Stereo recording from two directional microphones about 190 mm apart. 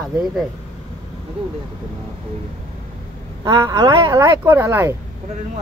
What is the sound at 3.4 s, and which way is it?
Speech, 20° right (ahead or behind).